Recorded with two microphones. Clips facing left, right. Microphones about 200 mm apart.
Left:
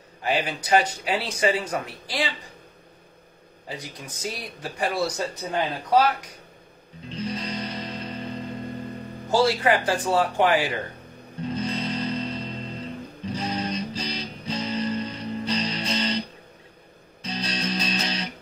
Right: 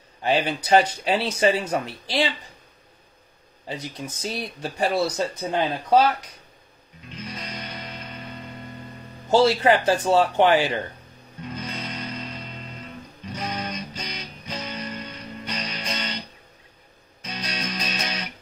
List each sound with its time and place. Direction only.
0.2 s speech: 25° right (ahead or behind)
3.6 s speech: 25° right (ahead or behind)
7.1 s music: 30° left (ahead or behind)
9.3 s speech: 25° right (ahead or behind)
11.4 s music: 30° left (ahead or behind)
17.2 s music: 30° left (ahead or behind)